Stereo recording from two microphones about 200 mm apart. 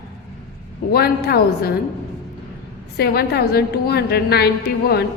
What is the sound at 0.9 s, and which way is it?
Speech, 50° left (ahead or behind).